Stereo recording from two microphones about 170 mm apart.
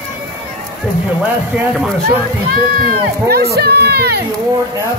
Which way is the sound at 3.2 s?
65° right (ahead or behind).